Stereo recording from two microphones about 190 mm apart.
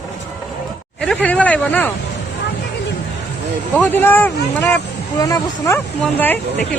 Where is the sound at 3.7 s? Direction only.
10° left (ahead or behind).